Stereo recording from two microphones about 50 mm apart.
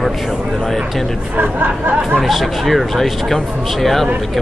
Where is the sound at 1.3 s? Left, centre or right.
Right.